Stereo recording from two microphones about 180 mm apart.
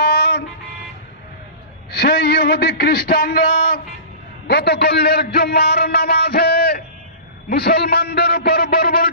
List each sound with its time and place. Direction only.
0.0 s music: 60° left (ahead or behind)
1.9 s a man's voice: 60° left (ahead or behind)
4.5 s a man's voice: 65° left (ahead or behind)